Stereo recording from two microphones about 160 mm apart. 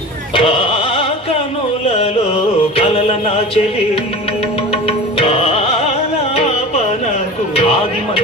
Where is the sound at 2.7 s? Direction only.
35° left (ahead or behind).